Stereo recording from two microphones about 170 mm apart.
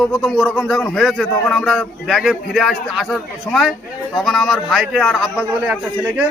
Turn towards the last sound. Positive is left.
turn(degrees=-5)  # may be behind; listen again after turning